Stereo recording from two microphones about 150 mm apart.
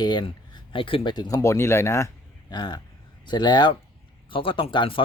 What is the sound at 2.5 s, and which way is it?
Speech, 30° left (ahead or behind).